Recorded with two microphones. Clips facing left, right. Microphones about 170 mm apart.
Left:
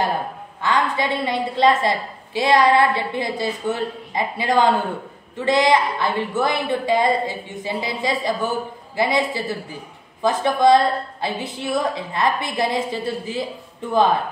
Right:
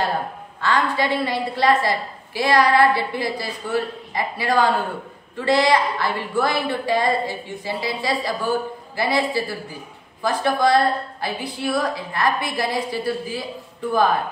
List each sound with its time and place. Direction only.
0.6 s a woman's voice: 20° left (ahead or behind)